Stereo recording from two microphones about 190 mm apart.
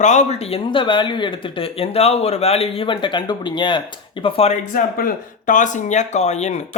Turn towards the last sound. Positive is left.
turn(degrees=35)  # may be behind; listen again after turning